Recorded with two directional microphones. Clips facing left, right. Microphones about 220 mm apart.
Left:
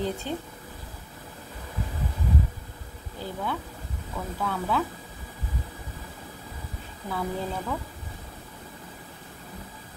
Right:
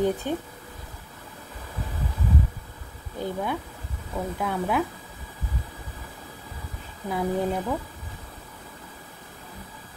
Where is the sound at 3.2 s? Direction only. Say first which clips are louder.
Right 6 dB; 20° right (ahead or behind).